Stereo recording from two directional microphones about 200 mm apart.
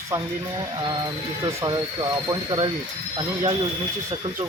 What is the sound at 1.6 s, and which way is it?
Speech, 20° right (ahead or behind).